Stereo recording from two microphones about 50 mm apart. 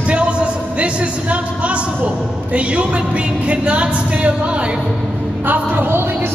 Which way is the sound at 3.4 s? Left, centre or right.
Right.